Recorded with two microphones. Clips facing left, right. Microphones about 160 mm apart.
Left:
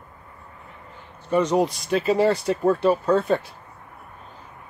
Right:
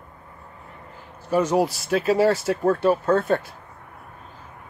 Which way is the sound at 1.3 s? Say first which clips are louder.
Even; 5° right (ahead or behind).